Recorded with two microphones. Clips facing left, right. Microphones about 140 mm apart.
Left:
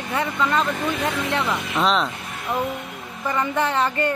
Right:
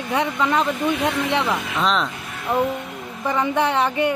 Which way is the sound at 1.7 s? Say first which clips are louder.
Left 2 dB; centre (ahead or behind).